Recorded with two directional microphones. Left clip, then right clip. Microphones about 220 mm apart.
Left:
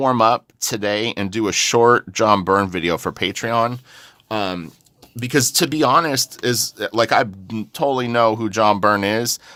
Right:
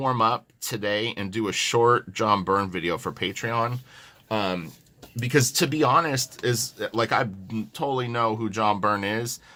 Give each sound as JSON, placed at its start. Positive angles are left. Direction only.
{"t": 0.0, "sound": "speech", "side_deg": 50}